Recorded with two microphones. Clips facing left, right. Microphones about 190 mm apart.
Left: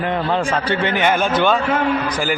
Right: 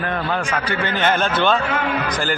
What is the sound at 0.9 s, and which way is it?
Speech, 10° left (ahead or behind).